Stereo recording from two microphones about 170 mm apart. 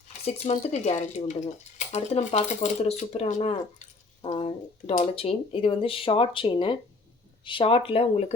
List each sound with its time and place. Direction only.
0.3 s speech: 40° left (ahead or behind)
4.2 s speech: 30° left (ahead or behind)